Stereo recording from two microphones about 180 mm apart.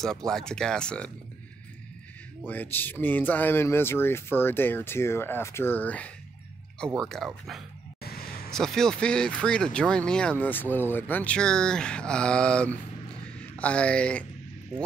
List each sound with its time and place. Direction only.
0.0 s speech: 5° left (ahead or behind)
2.4 s speech: 10° left (ahead or behind)
8.0 s a sound: 55° left (ahead or behind)
8.5 s speech: 5° left (ahead or behind)